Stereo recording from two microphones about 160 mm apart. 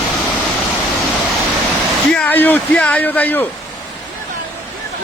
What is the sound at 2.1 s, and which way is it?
Speech, 10° left (ahead or behind).